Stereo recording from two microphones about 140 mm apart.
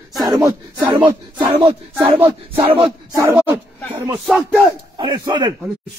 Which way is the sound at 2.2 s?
40° right (ahead or behind).